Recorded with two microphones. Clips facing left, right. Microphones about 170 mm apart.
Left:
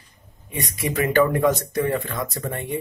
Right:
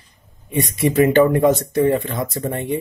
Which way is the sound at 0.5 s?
25° right (ahead or behind).